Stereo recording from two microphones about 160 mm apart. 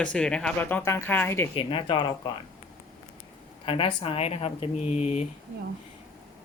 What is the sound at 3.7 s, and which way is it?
Speech, 35° left (ahead or behind).